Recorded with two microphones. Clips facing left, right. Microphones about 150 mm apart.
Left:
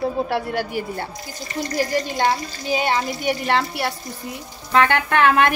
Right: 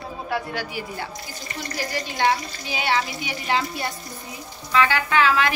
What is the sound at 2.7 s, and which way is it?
Speech, 45° left (ahead or behind).